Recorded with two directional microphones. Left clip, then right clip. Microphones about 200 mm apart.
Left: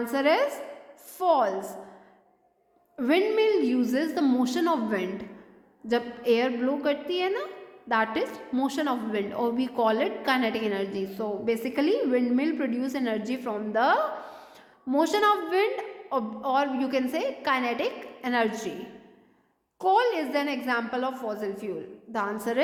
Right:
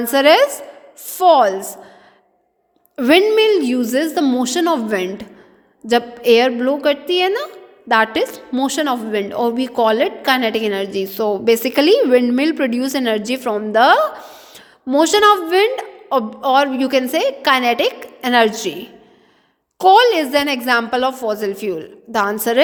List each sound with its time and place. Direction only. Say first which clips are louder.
0.0 s a woman's voice: right 12 dB; 45° right (ahead or behind)
2.9 s a woman's voice: right 12 dB; 45° right (ahead or behind)
19.8 s a woman's voice: right 13 dB; 45° right (ahead or behind)